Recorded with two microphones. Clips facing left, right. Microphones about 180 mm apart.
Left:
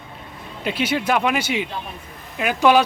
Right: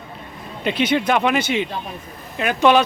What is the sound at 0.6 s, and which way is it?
Speech, 5° left (ahead or behind).